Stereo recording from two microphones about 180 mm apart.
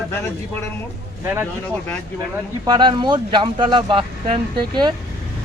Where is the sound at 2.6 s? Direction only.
25° right (ahead or behind).